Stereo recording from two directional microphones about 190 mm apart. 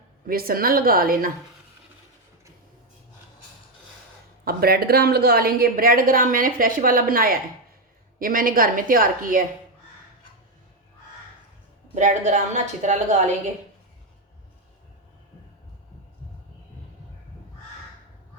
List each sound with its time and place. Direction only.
0.3 s a woman's voice: 50° right (ahead or behind)
4.4 s a woman's voice: 55° right (ahead or behind)
11.9 s a woman's voice: 40° right (ahead or behind)